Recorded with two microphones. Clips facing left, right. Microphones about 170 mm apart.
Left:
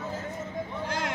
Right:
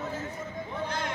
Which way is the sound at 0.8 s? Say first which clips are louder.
Left 2 dB; 90° left.